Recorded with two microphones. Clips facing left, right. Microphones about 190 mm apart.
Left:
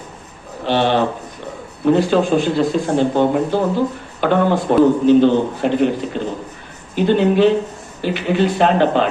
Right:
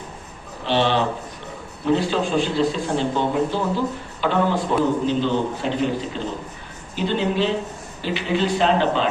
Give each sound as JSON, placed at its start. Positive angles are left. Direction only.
{"t": 0.6, "sound": "a man's voice", "side_deg": 50}